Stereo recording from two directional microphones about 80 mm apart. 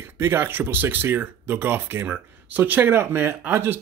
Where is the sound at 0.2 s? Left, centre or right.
Right.